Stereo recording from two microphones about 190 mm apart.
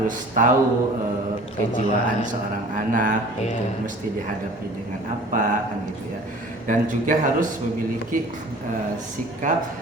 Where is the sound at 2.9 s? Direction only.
45° right (ahead or behind).